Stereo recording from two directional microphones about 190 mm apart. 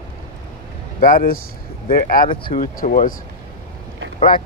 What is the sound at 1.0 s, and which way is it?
Speech, 50° left (ahead or behind).